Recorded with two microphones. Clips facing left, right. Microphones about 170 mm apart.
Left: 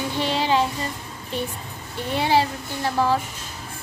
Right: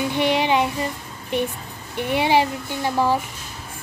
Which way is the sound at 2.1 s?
15° right (ahead or behind).